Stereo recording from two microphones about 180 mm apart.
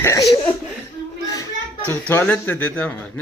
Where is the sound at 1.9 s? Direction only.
10° left (ahead or behind).